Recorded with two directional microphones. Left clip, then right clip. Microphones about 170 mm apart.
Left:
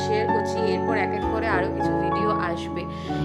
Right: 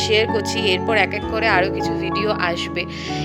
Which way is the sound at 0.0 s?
30° right (ahead or behind).